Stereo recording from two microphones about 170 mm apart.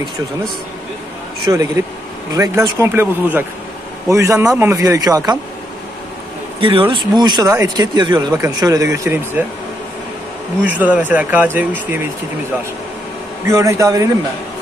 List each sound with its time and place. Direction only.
1.4 s speech: 20° right (ahead or behind)
6.6 s speech: 30° right (ahead or behind); by 9.4 s 15° right (ahead or behind)
10.6 s speech: 10° right (ahead or behind)
13.5 s speech: 20° right (ahead or behind)